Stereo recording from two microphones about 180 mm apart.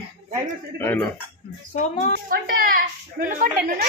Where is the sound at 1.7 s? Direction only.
40° left (ahead or behind).